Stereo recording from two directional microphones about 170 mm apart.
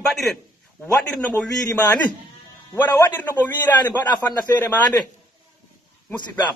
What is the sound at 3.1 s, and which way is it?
Speech, 10° left (ahead or behind).